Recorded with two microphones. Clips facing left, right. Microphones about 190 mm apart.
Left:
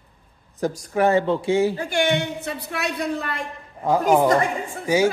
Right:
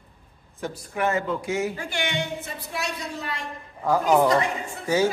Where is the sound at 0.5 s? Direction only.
40° left (ahead or behind).